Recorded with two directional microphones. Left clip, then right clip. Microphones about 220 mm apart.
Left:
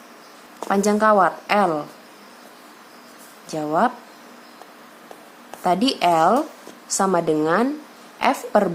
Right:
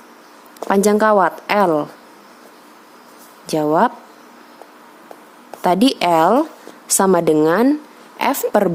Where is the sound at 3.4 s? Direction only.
40° right (ahead or behind).